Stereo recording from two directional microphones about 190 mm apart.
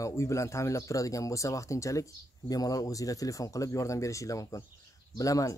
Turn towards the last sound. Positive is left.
turn(degrees=15)  # may be behind; listen again after turning